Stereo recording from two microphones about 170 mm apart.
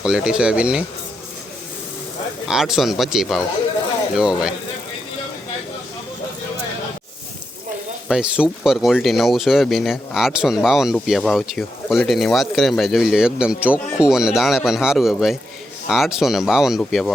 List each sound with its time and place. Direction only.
0.0 s speech: 5° right (ahead or behind)
2.5 s speech: 5° right (ahead or behind)
8.0 s speech: 5° right (ahead or behind)